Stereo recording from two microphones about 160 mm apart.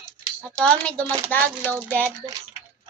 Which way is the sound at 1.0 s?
25° right (ahead or behind).